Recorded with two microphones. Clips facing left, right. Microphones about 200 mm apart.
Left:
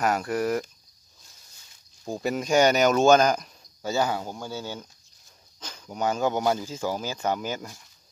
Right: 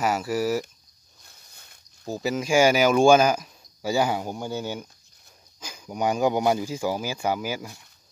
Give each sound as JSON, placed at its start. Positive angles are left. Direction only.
{"t": 0.0, "sound": "speech", "side_deg": -5}
{"t": 1.2, "sound": "a sound", "side_deg": -60}
{"t": 2.0, "sound": "speech", "side_deg": -5}